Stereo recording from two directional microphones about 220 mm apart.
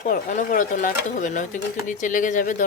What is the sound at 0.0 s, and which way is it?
Speech, 35° left (ahead or behind).